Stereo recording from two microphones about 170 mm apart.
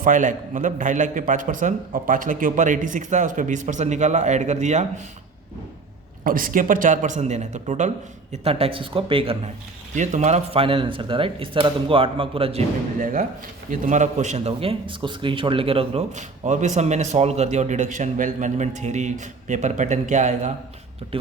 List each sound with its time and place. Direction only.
0.0 s a man's voice: 50° right (ahead or behind)
6.2 s a man's voice: 55° right (ahead or behind); by 9.5 s 35° right (ahead or behind)
9.9 s speech: 45° right (ahead or behind)
13.0 s a man's voice: 50° right (ahead or behind)